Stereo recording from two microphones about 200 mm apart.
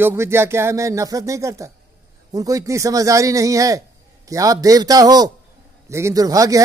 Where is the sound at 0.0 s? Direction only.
10° right (ahead or behind).